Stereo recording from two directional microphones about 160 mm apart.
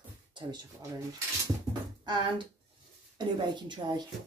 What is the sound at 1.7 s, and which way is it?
Speech, 25° right (ahead or behind).